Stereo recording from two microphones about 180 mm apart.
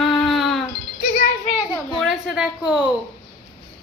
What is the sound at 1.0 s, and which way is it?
Speech, 55° left (ahead or behind).